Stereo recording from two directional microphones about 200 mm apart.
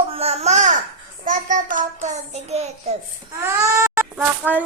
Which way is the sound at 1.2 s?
40° right (ahead or behind).